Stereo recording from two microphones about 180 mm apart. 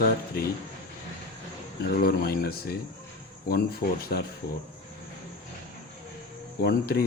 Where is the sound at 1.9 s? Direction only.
60° left (ahead or behind).